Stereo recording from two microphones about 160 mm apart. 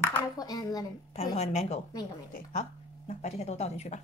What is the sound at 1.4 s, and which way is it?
Speech, 45° left (ahead or behind).